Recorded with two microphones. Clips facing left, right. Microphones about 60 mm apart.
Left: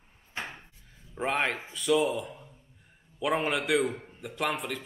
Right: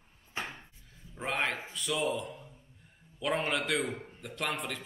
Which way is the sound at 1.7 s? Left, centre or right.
Centre.